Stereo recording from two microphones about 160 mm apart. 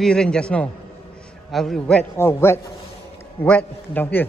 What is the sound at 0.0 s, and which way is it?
A man's voice, 5° left (ahead or behind).